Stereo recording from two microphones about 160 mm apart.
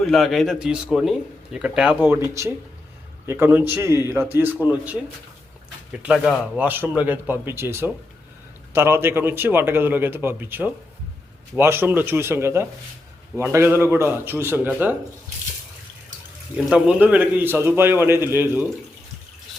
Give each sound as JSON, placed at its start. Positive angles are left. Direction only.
{"t": 0.0, "sound": "speech", "side_deg": 0}
{"t": 2.0, "sound": "a man's voice", "side_deg": -20}
{"t": 16.6, "sound": "a man's voice", "side_deg": -5}